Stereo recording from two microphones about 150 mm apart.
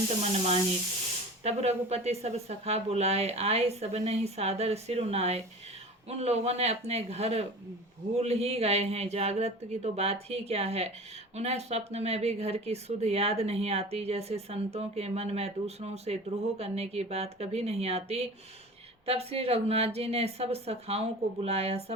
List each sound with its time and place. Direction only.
0.2 s speech: 45° right (ahead or behind)